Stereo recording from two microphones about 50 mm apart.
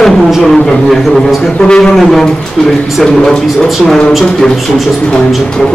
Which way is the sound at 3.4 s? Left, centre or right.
Centre.